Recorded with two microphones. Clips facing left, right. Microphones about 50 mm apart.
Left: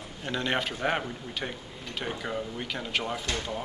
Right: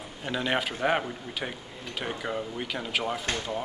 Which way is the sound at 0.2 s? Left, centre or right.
Centre.